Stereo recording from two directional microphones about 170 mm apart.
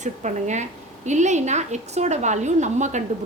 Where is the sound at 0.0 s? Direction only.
45° right (ahead or behind).